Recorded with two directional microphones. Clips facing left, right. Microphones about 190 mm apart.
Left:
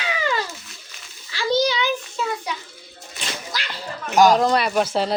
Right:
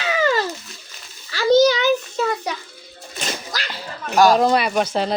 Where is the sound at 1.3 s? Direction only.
45° right (ahead or behind).